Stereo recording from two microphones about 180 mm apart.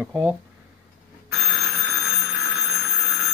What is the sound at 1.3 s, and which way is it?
Bicycle bell, centre (ahead or behind).